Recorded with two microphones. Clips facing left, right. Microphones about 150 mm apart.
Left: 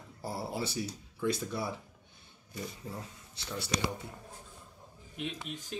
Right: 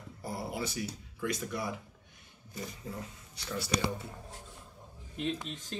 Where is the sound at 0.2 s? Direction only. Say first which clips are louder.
Left 1 dB; 30° left (ahead or behind).